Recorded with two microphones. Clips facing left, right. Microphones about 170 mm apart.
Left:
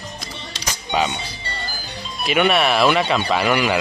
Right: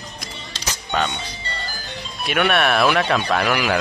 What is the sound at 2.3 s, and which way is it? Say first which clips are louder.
Speech: left 2 dB; centre (ahead or behind).